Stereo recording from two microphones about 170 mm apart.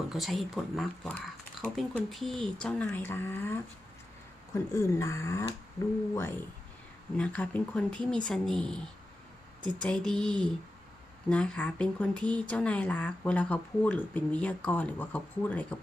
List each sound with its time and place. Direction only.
0.1 s speech: centre (ahead or behind)